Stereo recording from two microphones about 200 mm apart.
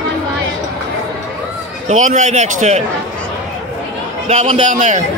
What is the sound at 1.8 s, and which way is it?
Speech, 35° right (ahead or behind).